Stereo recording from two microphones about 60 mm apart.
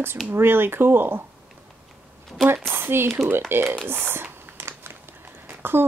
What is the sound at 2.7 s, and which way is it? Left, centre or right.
A woman's voice, right.